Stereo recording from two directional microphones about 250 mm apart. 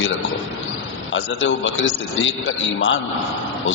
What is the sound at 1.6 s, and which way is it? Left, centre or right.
Speech, left.